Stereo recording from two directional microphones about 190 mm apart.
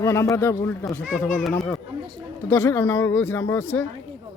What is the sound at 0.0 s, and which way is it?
Speech, 15° left (ahead or behind).